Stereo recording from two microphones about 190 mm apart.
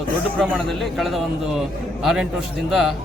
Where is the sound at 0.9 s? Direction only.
Centre (ahead or behind).